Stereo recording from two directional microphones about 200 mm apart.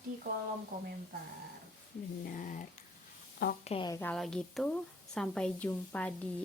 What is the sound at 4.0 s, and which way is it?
A woman's voice, 5° left (ahead or behind).